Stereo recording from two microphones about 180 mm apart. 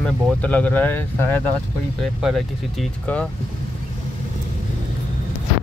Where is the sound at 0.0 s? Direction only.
10° left (ahead or behind).